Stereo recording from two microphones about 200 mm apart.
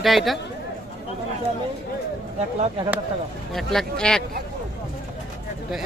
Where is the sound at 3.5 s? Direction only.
Centre (ahead or behind).